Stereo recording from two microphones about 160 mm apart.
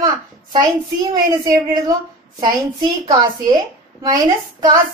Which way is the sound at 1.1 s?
25° right (ahead or behind).